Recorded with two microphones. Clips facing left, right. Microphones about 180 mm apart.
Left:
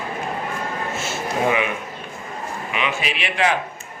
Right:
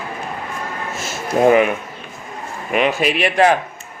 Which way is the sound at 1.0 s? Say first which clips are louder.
Right 8 dB; 40° right (ahead or behind).